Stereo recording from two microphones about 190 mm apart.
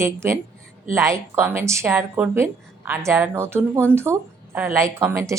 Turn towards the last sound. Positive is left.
turn(degrees=-15)  # may be behind; listen again after turning